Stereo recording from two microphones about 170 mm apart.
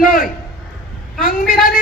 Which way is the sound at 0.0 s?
55° left (ahead or behind).